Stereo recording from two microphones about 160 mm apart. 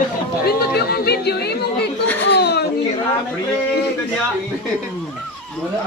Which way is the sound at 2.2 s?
90° left.